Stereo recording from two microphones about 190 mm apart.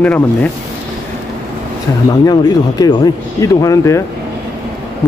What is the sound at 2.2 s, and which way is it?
Speech, 20° left (ahead or behind).